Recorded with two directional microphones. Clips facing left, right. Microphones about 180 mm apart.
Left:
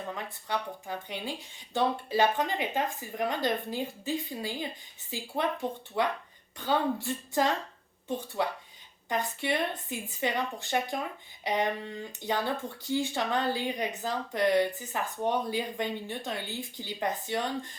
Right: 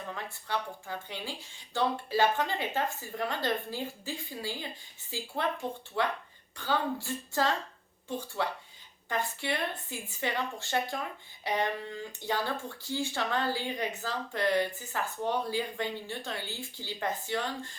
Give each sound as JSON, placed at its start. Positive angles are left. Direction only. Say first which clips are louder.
{"t": 0.1, "sound": "speech", "louder": "even", "side_deg": 20}